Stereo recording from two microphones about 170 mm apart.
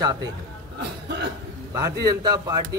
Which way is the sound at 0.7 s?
80° right.